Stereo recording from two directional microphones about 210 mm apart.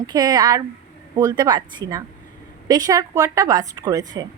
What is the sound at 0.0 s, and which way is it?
A woman's voice, 20° right (ahead or behind).